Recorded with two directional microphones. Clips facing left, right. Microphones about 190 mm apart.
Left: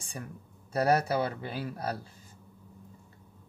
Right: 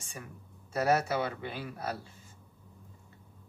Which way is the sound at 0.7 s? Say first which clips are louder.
Left 2 dB; 35° left (ahead or behind).